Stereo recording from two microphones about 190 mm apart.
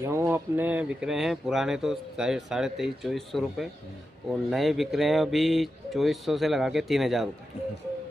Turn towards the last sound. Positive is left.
turn(degrees=0)  # may be behind; listen again after turning